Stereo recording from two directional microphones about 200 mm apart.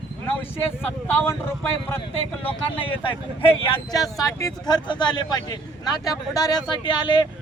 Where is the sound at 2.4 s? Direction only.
25° left (ahead or behind).